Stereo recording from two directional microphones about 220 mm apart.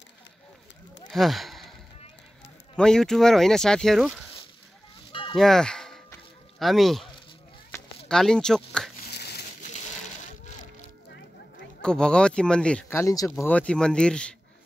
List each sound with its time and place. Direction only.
1.1 s sigh: centre (ahead or behind)
2.7 s speech: 5° left (ahead or behind)
5.3 s speech: centre (ahead or behind)
7.7 s a sound: 15° left (ahead or behind)
8.1 s speech: 5° left (ahead or behind)
9.1 s crumpling: 45° left (ahead or behind)
11.8 s speech: 5° left (ahead or behind)